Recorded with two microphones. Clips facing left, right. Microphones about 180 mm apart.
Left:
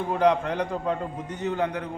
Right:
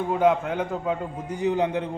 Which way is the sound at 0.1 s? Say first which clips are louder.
Even; 5° right (ahead or behind).